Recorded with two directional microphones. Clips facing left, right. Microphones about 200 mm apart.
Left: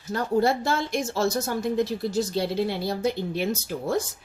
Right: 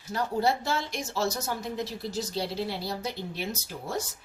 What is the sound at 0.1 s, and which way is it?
A woman's voice, 55° left (ahead or behind).